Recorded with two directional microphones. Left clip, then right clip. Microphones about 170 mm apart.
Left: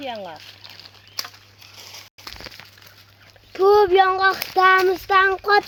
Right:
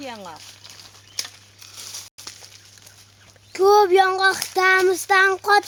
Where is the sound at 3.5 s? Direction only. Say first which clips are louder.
Even; 30° right (ahead or behind).